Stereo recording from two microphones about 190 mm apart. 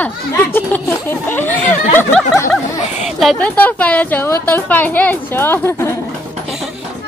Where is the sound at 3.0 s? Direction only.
Centre (ahead or behind).